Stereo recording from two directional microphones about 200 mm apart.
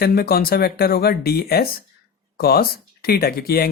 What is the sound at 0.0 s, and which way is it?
Speech, 50° left (ahead or behind).